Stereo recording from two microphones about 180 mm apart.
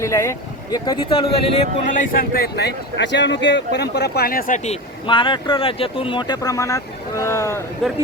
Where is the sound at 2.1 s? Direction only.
55° left (ahead or behind).